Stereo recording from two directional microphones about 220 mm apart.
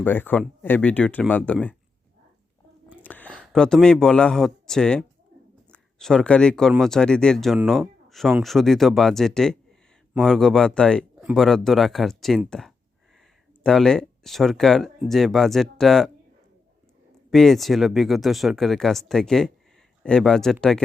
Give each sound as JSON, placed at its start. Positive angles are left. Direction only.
{"t": 0.0, "sound": "speech", "side_deg": 10}
{"t": 3.0, "sound": "speech", "side_deg": 5}
{"t": 17.3, "sound": "speech", "side_deg": 0}